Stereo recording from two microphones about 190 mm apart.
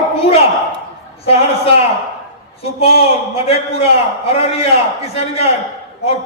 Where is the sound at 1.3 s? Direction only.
30° left (ahead or behind).